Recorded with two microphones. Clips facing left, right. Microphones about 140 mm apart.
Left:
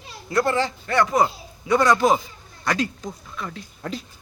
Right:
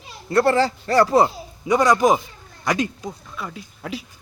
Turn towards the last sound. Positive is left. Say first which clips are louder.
# even
turn(degrees=-10)  # may be behind; listen again after turning